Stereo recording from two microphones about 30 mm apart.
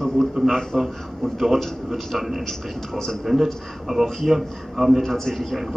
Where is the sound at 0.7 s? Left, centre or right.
Centre.